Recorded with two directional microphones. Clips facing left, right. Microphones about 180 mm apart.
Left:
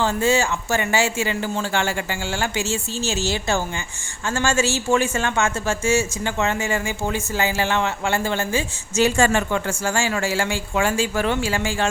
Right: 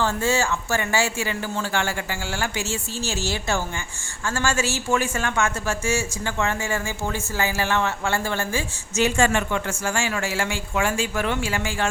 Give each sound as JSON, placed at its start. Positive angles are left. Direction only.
{"t": 0.0, "sound": "speech", "side_deg": 15}
{"t": 9.0, "sound": "a man's voice", "side_deg": 35}